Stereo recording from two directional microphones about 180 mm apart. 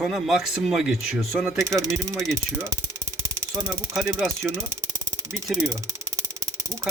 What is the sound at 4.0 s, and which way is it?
Speech, centre (ahead or behind).